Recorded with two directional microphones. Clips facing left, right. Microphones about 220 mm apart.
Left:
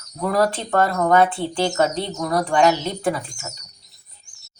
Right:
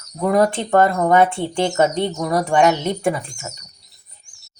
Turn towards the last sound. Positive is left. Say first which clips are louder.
# right 2 dB
turn(degrees=-15)  # may be behind; listen again after turning